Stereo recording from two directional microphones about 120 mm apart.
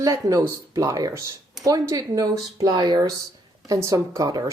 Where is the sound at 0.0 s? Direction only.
30° right (ahead or behind).